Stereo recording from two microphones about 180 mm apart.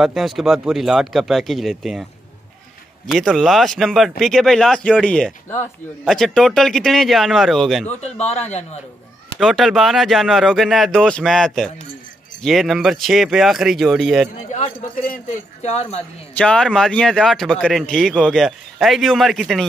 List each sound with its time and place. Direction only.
0.0 s a man's voice: centre (ahead or behind)
3.1 s a man's voice: centre (ahead or behind)
8.0 s a man's voice: 35° left (ahead or behind)
9.4 s a man's voice: centre (ahead or behind)
14.5 s a man's voice: 40° left (ahead or behind)
16.3 s a man's voice: 5° left (ahead or behind)